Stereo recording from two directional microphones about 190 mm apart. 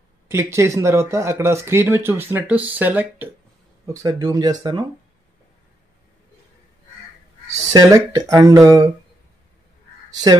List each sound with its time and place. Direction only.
0.3 s speech: 15° right (ahead or behind)
7.5 s speech: 20° right (ahead or behind)